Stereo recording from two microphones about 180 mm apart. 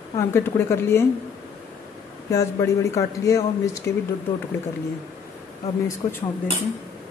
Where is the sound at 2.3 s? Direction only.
15° left (ahead or behind).